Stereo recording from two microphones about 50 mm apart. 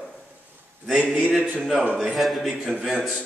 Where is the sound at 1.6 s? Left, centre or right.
Centre.